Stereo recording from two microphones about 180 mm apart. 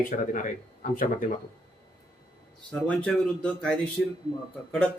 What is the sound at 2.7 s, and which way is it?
Speech, 5° left (ahead or behind).